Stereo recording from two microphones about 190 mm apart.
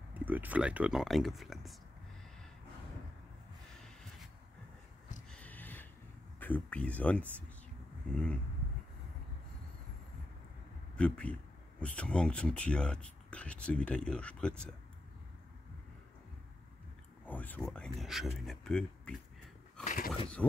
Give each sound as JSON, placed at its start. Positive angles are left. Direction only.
{"t": 0.1, "sound": "speech", "side_deg": -10}
{"t": 5.3, "sound": "a sound", "side_deg": 10}
{"t": 6.4, "sound": "speech", "side_deg": 10}
{"t": 11.0, "sound": "speech", "side_deg": 5}
{"t": 17.3, "sound": "speech", "side_deg": 10}
{"t": 19.8, "sound": "a sound", "side_deg": 45}
{"t": 20.4, "sound": "speech", "side_deg": 5}